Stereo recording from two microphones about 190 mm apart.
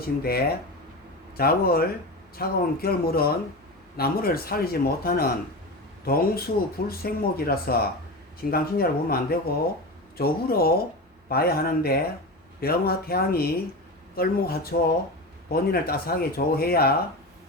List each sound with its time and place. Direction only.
0.2 s speech: 55° left (ahead or behind)